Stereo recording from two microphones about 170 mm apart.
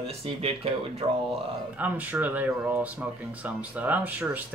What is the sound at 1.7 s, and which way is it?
Speech, 10° right (ahead or behind).